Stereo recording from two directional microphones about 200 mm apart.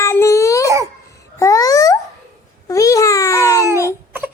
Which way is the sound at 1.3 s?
15° left (ahead or behind).